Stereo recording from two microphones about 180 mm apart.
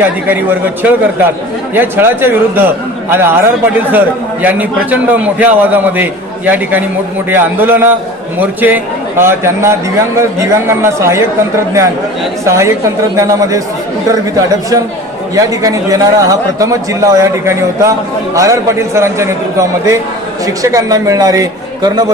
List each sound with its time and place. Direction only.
0.0 s a man's voice: 10° right (ahead or behind)
12.4 s a man's voice: 15° right (ahead or behind)
15.3 s a man's voice: 20° right (ahead or behind)
20.4 s a man's voice: 20° right (ahead or behind)